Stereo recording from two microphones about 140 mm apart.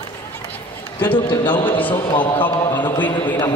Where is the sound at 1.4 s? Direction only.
35° left (ahead or behind).